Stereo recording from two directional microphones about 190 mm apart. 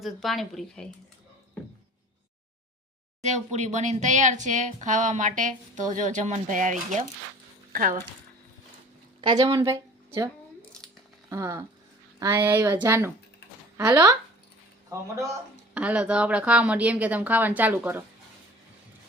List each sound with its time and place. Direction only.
0.0 s a woman's voice: centre (ahead or behind)
3.2 s speech: 40° right (ahead or behind)
9.2 s a woman's voice: 25° right (ahead or behind)
10.6 s a sound: 5° left (ahead or behind)
11.3 s a woman's voice: 15° right (ahead or behind)
15.7 s a woman's voice: 5° right (ahead or behind)